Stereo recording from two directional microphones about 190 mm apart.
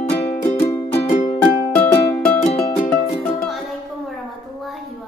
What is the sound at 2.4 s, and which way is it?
Music, 30° left (ahead or behind).